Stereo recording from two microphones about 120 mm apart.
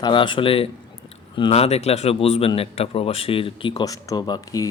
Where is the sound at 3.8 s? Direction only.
30° left (ahead or behind).